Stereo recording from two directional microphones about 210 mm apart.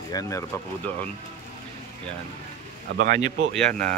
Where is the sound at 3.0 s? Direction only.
40° right (ahead or behind).